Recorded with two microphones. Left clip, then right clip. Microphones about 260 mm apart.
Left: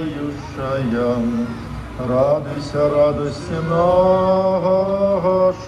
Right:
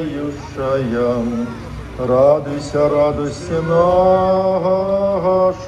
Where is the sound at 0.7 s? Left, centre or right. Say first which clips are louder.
Right 3 dB; right.